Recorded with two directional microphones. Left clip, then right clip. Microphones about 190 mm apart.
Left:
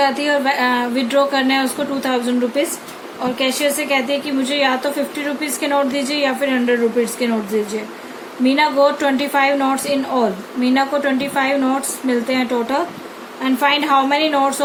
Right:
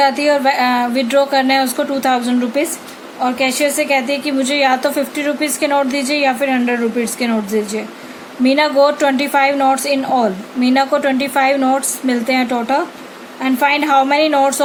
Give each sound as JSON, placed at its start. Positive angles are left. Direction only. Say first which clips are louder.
{"t": 0.0, "sound": "a woman's voice", "louder": "right 4 dB", "side_deg": -50}